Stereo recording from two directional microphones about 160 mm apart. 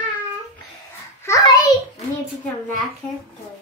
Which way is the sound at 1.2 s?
20° left (ahead or behind).